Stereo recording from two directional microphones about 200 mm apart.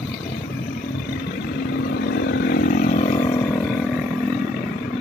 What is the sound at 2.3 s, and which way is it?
Vehicle, 50° left (ahead or behind).